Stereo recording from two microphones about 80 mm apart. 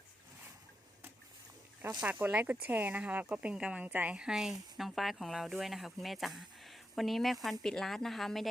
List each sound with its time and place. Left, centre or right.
2.0 s speech: centre